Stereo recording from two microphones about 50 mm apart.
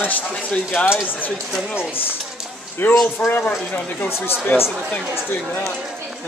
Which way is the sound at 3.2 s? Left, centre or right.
Left.